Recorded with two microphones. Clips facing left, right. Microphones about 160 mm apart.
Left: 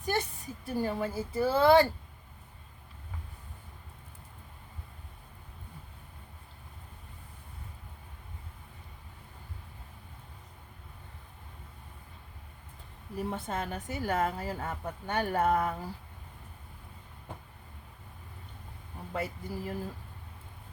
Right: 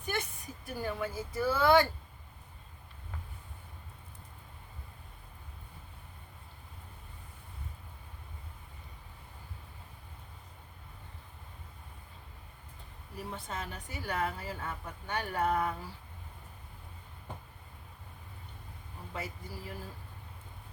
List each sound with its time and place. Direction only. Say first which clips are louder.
0.0 s a woman's voice: left 5 dB; 35° left (ahead or behind)
13.3 s a woman's voice: left 6 dB; 50° left (ahead or behind)
19.1 s speech: left 6 dB; 55° left (ahead or behind)